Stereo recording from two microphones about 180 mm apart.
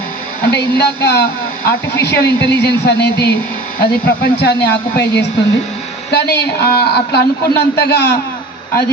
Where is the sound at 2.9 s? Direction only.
65° left (ahead or behind).